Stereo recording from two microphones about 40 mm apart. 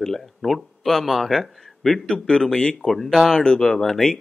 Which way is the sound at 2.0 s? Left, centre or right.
Centre.